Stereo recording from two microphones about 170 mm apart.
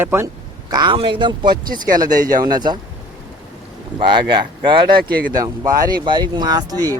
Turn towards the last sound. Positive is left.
turn(degrees=-25)  # may be behind; listen again after turning